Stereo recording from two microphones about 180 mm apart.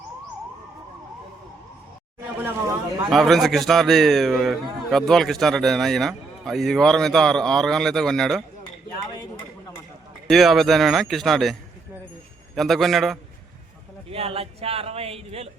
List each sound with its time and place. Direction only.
3.1 s a man's voice: centre (ahead or behind)
10.2 s a man's voice: centre (ahead or behind)
12.5 s a man's voice: centre (ahead or behind)
14.1 s speech: 35° right (ahead or behind)